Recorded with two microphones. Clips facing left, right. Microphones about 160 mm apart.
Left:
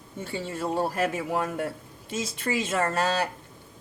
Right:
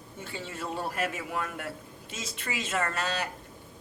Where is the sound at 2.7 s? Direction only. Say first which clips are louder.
Left 3 dB; 30° left (ahead or behind).